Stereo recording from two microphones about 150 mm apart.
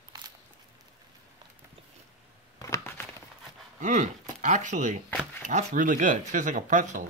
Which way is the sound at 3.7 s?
55° right (ahead or behind).